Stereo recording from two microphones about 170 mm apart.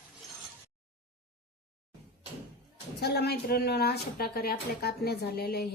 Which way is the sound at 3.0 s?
70° left (ahead or behind).